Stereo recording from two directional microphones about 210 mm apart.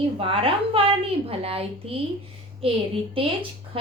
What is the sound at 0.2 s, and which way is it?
A woman's voice, 25° right (ahead or behind).